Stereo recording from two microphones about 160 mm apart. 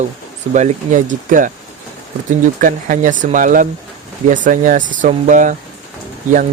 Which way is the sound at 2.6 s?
55° right (ahead or behind).